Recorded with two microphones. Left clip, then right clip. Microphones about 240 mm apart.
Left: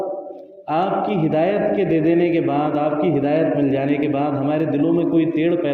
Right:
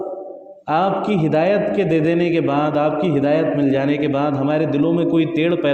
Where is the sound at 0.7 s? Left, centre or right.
Right.